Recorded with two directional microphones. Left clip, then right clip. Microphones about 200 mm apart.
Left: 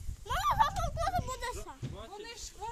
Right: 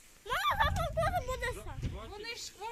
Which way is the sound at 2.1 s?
20° left (ahead or behind).